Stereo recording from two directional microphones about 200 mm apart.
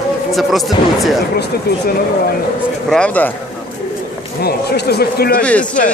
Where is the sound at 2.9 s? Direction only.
5° left (ahead or behind).